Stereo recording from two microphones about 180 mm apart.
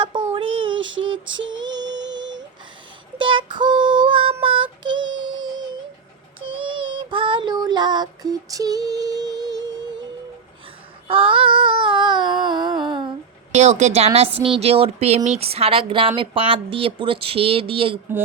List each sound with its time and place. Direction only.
0.0 s child singing: 25° right (ahead or behind)
1.5 s music: 25° right (ahead or behind)
3.2 s child singing: 25° right (ahead or behind)
11.1 s female singing: 30° right (ahead or behind)
13.5 s a woman's voice: 40° right (ahead or behind)